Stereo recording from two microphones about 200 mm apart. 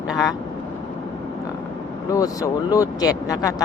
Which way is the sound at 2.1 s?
15° left (ahead or behind).